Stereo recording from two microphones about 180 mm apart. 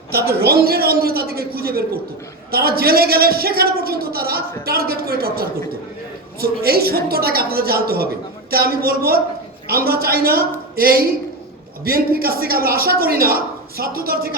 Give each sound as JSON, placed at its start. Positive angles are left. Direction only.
{"t": 0.3, "sound": "a woman's voice", "side_deg": -60}